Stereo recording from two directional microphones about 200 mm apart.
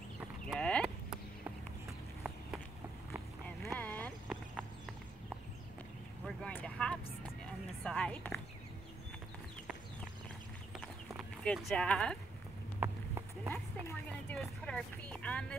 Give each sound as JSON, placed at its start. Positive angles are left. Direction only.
{"t": 0.5, "sound": "clip-clop", "side_deg": 5}
{"t": 3.4, "sound": "boat", "side_deg": 5}
{"t": 4.3, "sound": "clip-clop", "side_deg": -5}
{"t": 6.2, "sound": "vehicle", "side_deg": 5}
{"t": 7.8, "sound": "a sound", "side_deg": 5}
{"t": 11.1, "sound": "speech", "side_deg": 0}
{"t": 12.8, "sound": "run", "side_deg": -10}
{"t": 13.5, "sound": "a sound", "side_deg": 15}
{"t": 14.3, "sound": "vehicle", "side_deg": 0}